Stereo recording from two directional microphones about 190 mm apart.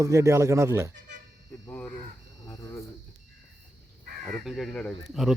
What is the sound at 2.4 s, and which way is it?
Cricket, 20° left (ahead or behind).